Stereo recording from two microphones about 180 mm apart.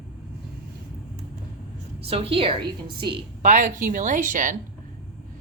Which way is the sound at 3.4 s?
45° right (ahead or behind).